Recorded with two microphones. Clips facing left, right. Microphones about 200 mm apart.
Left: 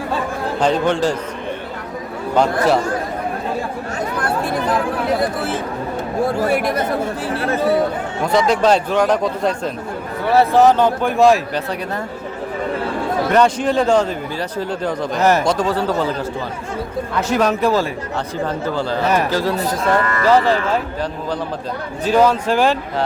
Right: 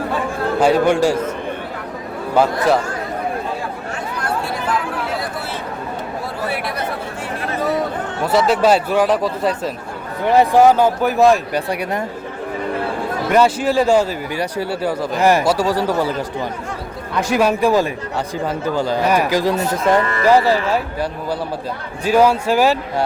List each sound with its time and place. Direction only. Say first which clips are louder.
0.6 s a man's voice: right 3 dB; 10° right (ahead or behind)
2.3 s speech: even; 5° right (ahead or behind)
6.2 s speech: left 8 dB; 45° left (ahead or behind)
8.2 s speech: even; 5° right (ahead or behind)
10.2 s a man's voice: right 1 dB; 15° right (ahead or behind)
13.3 s a man's voice: right 1 dB; 5° right (ahead or behind)
17.2 s a man's voice: right 1 dB; 10° right (ahead or behind)
20.2 s a man's voice: even; 10° right (ahead or behind)